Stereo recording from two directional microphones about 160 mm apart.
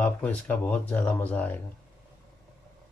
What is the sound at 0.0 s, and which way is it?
Speech, 10° left (ahead or behind).